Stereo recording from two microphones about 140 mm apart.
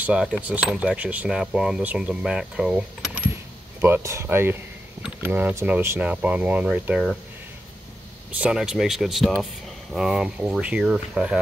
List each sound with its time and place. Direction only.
0.0 s speech: 10° right (ahead or behind)
3.8 s speech: 20° right (ahead or behind); by 7.2 s 5° right (ahead or behind)
8.3 s speech: 5° right (ahead or behind)